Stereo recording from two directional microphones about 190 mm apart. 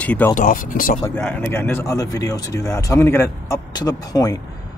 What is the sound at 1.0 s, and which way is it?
Speech, 10° left (ahead or behind).